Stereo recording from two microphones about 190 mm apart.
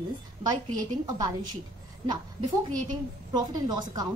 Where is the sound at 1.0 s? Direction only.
20° right (ahead or behind).